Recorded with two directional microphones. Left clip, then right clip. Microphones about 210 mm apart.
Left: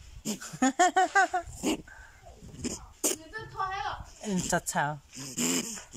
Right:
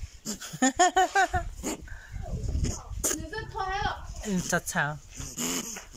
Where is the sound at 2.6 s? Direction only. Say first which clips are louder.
Even; 5° left (ahead or behind).